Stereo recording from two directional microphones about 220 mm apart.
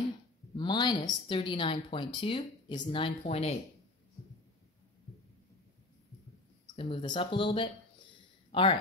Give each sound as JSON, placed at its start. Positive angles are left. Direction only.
{"t": 0.6, "sound": "speech", "side_deg": 20}
{"t": 6.6, "sound": "speech", "side_deg": 20}